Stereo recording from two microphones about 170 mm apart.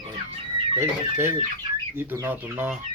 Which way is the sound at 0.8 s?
15° right (ahead or behind).